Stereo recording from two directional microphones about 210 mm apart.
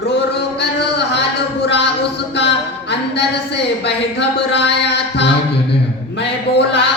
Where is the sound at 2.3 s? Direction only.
55° left (ahead or behind).